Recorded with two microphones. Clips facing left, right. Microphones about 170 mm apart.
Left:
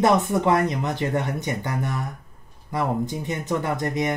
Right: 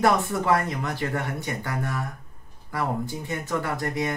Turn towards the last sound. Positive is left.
turn(degrees=20)  # may be behind; listen again after turning